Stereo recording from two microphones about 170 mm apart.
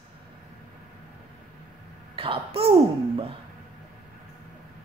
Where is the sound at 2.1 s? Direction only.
30° right (ahead or behind).